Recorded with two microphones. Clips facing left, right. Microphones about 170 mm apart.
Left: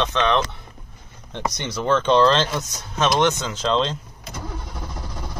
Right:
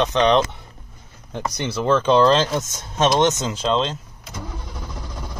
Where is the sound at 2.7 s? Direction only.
25° right (ahead or behind).